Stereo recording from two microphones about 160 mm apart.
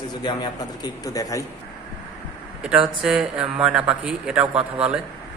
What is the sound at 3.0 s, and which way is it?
A man's voice, 5° right (ahead or behind).